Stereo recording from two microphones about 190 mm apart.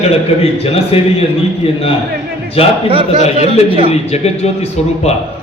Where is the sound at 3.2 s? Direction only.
35° left (ahead or behind).